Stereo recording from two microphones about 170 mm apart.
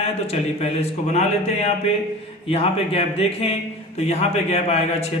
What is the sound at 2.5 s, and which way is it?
A man's voice, 35° left (ahead or behind).